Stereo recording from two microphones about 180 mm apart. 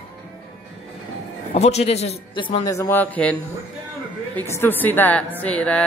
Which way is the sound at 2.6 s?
15° left (ahead or behind).